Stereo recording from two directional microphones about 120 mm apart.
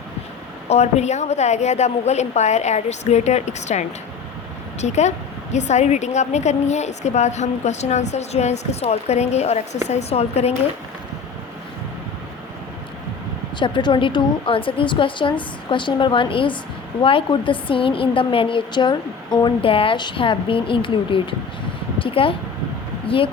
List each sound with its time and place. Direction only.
0.7 s a woman's voice: 65° left (ahead or behind)
13.6 s a woman's voice: 40° left (ahead or behind)